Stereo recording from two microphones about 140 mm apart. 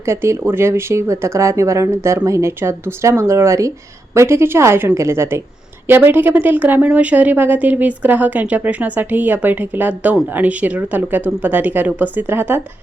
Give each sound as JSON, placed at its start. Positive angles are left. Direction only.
{"t": 0.0, "sound": "a woman's voice", "side_deg": -20}